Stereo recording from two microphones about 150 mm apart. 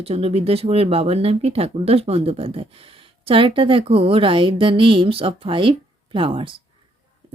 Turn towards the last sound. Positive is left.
turn(degrees=-35)  # may be behind; listen again after turning